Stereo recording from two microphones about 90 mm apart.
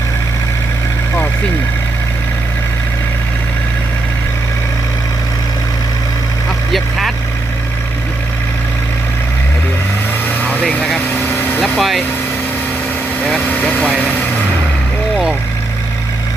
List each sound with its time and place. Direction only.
10.5 s vehicle: 15° left (ahead or behind)
11.6 s vehicle: centre (ahead or behind)
13.4 s vehicle: 15° left (ahead or behind)